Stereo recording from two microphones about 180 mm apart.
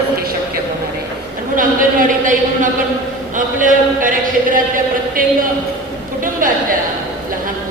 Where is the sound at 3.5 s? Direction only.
50° right (ahead or behind).